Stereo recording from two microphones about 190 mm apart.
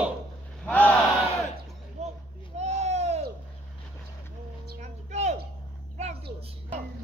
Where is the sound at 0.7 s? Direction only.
10° left (ahead or behind).